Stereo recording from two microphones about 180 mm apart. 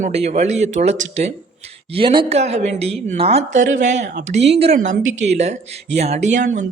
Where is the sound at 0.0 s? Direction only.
35° right (ahead or behind).